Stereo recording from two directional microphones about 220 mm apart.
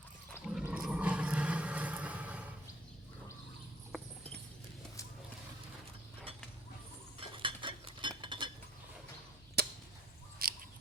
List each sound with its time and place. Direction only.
0.4 s a sound: 5° right (ahead or behind)
7.2 s cutlery: 25° right (ahead or behind)
9.6 s chop: 45° right (ahead or behind)
10.4 s bird: 45° right (ahead or behind)